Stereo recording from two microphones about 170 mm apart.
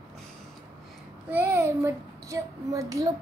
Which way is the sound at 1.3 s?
15° right (ahead or behind).